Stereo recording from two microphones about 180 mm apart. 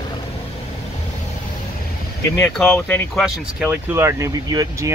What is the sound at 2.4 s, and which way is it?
Speech, 10° left (ahead or behind).